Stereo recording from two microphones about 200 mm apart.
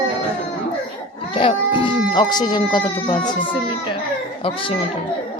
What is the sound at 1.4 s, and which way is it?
Speech, 25° left (ahead or behind).